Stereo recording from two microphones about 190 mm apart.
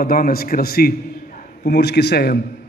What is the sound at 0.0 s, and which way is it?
A man's voice, 50° left (ahead or behind).